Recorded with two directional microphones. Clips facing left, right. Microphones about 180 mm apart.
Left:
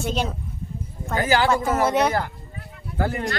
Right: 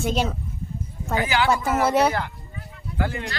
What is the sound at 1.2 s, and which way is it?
Speech, 40° left (ahead or behind).